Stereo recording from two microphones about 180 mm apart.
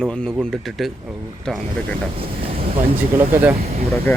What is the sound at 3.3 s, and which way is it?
Speech, 10° right (ahead or behind).